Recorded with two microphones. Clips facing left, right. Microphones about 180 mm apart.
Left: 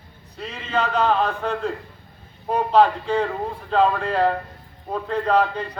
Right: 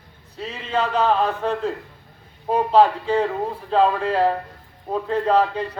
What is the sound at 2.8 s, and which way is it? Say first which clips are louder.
A man's voice: even; 5° right (ahead or behind).